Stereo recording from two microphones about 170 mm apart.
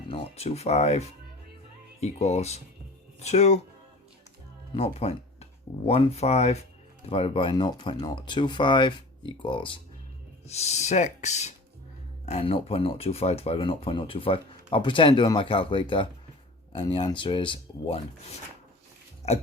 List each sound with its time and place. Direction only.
0.1 s speech: 35° left (ahead or behind)
4.7 s speech: 35° left (ahead or behind)